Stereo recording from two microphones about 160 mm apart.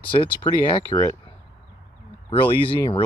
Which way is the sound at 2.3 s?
35° left (ahead or behind).